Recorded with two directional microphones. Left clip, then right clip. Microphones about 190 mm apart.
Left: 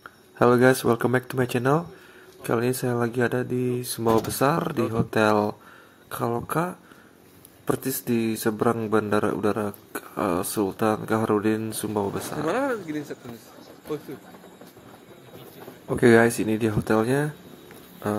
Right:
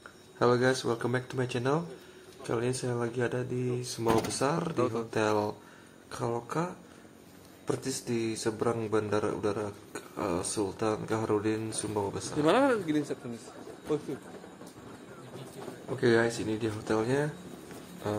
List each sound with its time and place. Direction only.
0.4 s speech: 25° left (ahead or behind)
12.4 s speech: 5° right (ahead or behind)
16.0 s speech: 30° left (ahead or behind)